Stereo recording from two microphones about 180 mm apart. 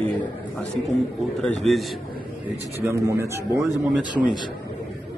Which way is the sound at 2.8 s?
15° right (ahead or behind).